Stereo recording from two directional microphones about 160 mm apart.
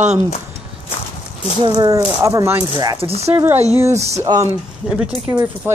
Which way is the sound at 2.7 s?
30° right (ahead or behind).